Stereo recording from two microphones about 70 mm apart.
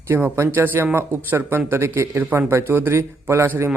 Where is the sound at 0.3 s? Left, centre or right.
Right.